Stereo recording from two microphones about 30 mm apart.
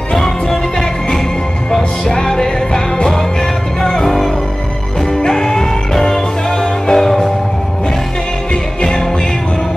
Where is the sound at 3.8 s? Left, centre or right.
Centre.